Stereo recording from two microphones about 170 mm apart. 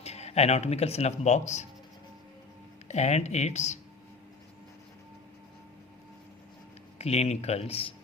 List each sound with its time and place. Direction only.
0.0 s speech: 40° left (ahead or behind)
2.9 s speech: 40° left (ahead or behind)
7.0 s speech: 40° left (ahead or behind)